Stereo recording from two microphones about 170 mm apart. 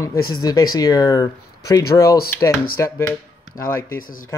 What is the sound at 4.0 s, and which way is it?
Speech, 55° left (ahead or behind).